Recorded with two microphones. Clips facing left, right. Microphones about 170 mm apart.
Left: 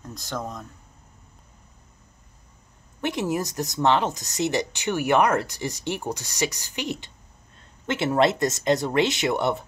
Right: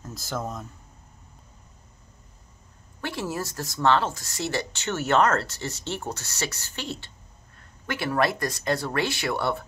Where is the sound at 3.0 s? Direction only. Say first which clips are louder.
Left 5 dB; 20° left (ahead or behind).